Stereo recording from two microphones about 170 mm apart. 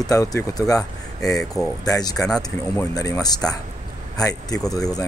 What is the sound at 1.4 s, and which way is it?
Speech, 5° left (ahead or behind).